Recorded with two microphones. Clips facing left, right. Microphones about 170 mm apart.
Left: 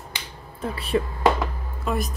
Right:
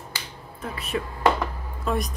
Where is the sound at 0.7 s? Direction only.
30° left (ahead or behind).